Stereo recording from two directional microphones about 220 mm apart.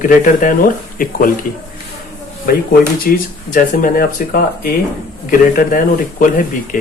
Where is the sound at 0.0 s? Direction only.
40° left (ahead or behind).